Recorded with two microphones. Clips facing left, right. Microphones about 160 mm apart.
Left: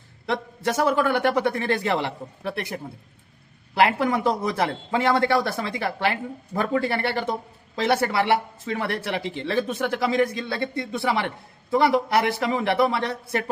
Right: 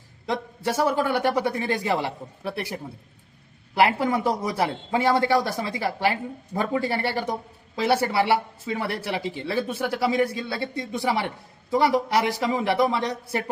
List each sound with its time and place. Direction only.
0.3 s speech: 15° right (ahead or behind)
3.8 s speech: 10° right (ahead or behind)